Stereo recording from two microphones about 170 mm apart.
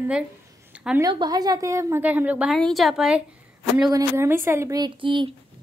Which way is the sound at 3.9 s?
15° right (ahead or behind).